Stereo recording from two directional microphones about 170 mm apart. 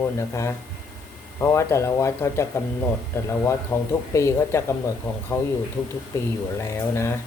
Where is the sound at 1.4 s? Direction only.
15° left (ahead or behind).